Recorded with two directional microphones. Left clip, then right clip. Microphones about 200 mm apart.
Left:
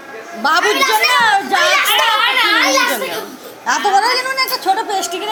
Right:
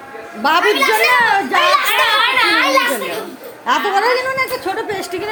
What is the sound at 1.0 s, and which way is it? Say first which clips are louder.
Speech: even; 20° right (ahead or behind).